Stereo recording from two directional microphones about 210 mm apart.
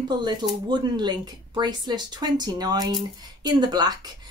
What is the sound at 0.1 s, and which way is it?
A woman's voice, 20° right (ahead or behind).